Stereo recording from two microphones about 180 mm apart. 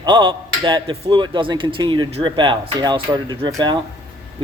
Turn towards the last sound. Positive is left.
turn(degrees=-20)  # may be behind; listen again after turning